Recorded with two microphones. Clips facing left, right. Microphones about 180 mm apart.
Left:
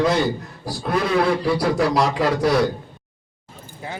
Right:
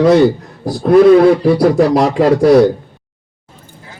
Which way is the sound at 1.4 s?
45° right (ahead or behind).